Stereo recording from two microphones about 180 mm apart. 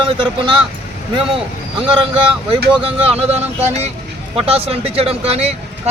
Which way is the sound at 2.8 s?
35° right (ahead or behind).